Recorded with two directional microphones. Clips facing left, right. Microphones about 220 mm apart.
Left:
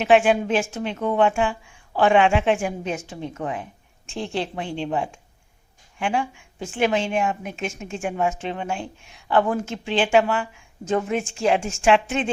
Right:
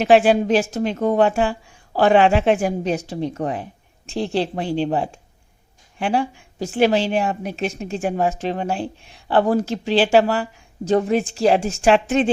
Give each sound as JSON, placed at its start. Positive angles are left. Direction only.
{"t": 0.0, "sound": "a woman's voice", "side_deg": -35}